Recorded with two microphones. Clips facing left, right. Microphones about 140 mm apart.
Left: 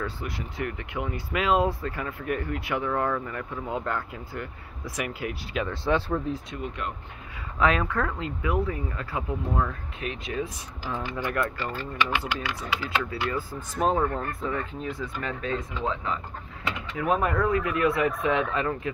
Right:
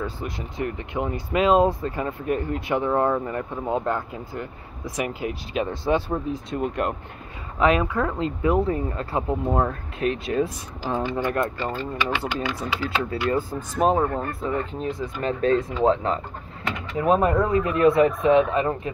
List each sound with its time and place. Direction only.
0.0 s speech: 20° right (ahead or behind)
6.5 s speech: 50° right (ahead or behind)
7.5 s speech: 20° right (ahead or behind)
8.4 s speech: 30° right (ahead or behind)
13.5 s speech: 15° right (ahead or behind)
15.4 s speech: 35° right (ahead or behind); by 18.8 s 20° right (ahead or behind)